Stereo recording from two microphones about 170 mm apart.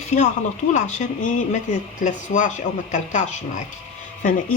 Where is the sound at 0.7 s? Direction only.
45° left (ahead or behind).